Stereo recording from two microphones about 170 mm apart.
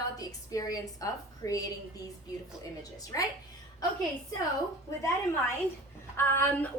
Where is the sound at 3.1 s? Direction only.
20° left (ahead or behind).